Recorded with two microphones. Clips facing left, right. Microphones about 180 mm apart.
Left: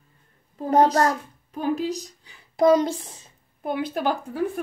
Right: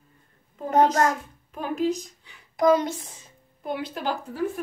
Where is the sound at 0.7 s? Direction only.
35° left (ahead or behind).